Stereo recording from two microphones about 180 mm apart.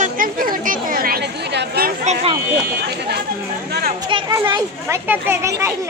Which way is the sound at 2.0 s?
35° right (ahead or behind).